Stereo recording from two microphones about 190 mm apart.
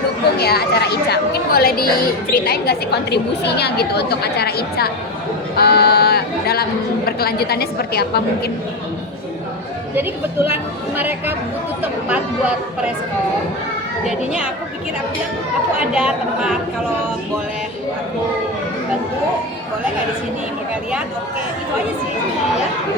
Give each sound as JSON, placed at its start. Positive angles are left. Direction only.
{"t": 0.3, "sound": "a woman's voice", "side_deg": 55}
{"t": 9.9, "sound": "speech", "side_deg": -10}
{"t": 16.0, "sound": "speech", "side_deg": -5}